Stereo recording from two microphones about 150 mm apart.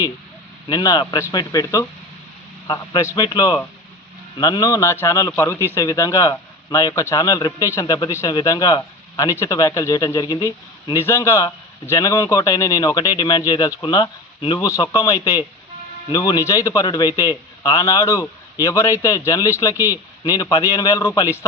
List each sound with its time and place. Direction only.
0.7 s speech: 25° left (ahead or behind)
19.7 s speech: 15° right (ahead or behind)
20.2 s speech: 25° left (ahead or behind)